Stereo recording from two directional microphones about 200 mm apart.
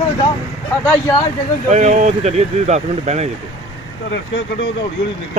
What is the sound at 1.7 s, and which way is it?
Speech, 35° right (ahead or behind).